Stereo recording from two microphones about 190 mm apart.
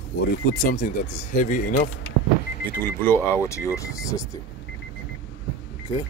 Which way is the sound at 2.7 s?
10° left (ahead or behind).